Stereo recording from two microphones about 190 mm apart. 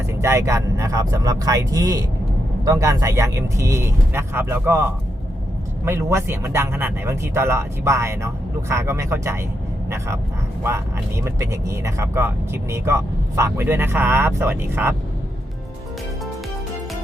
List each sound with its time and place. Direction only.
0.1 s speech: 15° right (ahead or behind)
11.2 s speech: 15° right (ahead or behind)